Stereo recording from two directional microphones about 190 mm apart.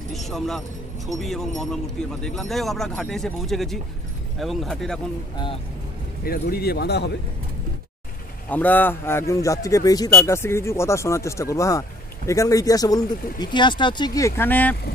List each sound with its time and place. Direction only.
0.1 s speech: centre (ahead or behind)
6.2 s speech: 55° left (ahead or behind)
8.5 s speech: 10° left (ahead or behind)